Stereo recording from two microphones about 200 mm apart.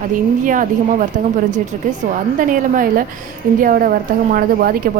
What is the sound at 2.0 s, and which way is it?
A woman's voice, 45° right (ahead or behind).